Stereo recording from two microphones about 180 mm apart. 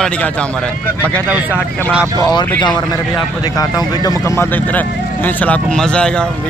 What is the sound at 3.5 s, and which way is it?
Speech, 20° left (ahead or behind).